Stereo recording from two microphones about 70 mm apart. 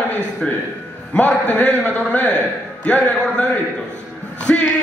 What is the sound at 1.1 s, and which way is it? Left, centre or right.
A man's voice, centre.